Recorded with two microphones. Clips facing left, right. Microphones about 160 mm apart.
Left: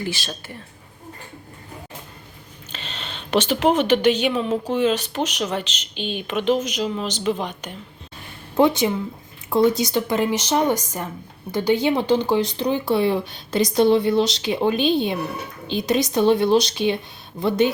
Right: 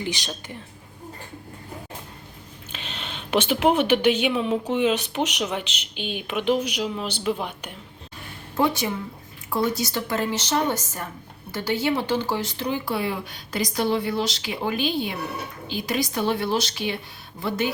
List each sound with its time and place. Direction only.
0.0 s a woman's voice: 20° right (ahead or behind)
2.7 s a woman's voice: 10° right (ahead or behind)
8.5 s speech: 20° left (ahead or behind)